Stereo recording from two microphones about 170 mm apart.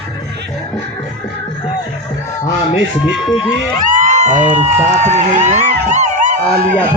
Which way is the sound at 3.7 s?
50° right (ahead or behind).